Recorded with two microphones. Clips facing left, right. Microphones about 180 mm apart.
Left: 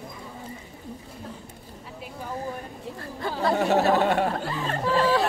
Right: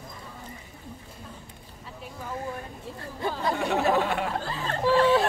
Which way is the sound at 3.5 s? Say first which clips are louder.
Left 4 dB; 40° left (ahead or behind).